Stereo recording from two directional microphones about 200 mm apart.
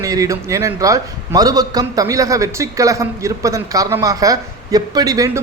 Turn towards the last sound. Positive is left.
turn(degrees=-15)  # may be behind; listen again after turning